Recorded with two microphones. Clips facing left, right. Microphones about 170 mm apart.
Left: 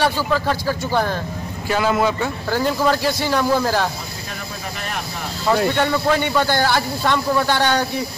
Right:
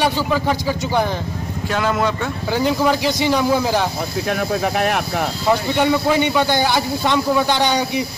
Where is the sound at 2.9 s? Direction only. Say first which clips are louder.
Right 2 dB; 15° right (ahead or behind).